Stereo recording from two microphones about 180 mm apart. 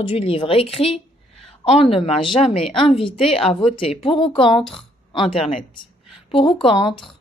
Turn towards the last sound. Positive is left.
turn(degrees=25)  # may be behind; listen again after turning